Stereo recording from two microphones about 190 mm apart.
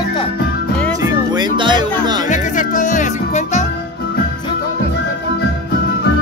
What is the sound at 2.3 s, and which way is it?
Music, 40° left (ahead or behind).